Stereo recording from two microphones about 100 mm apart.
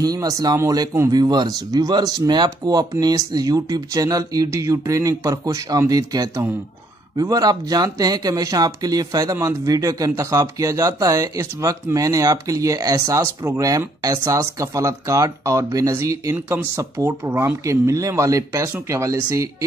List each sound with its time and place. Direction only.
0.0 s speech: 40° right (ahead or behind)
1.1 s speech: 45° right (ahead or behind)
16.3 s speech: 20° right (ahead or behind)